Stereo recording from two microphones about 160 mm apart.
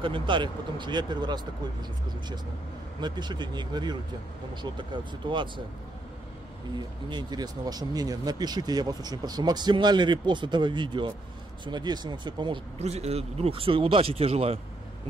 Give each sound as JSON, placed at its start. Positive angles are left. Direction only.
{"t": 0.0, "sound": "speech", "side_deg": -30}
{"t": 7.1, "sound": "speech", "side_deg": -25}
{"t": 12.7, "sound": "speech", "side_deg": -40}